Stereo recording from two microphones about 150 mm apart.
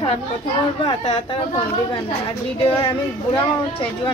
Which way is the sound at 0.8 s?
30° left (ahead or behind).